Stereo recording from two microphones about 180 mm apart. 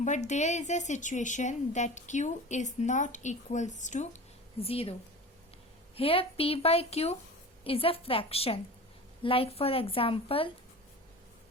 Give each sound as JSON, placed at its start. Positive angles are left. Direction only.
{"t": 0.0, "sound": "a woman's voice", "side_deg": 40}
{"t": 6.0, "sound": "a woman's voice", "side_deg": 30}